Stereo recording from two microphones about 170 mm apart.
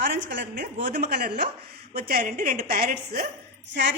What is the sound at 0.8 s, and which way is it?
A woman's voice, 75° right (ahead or behind).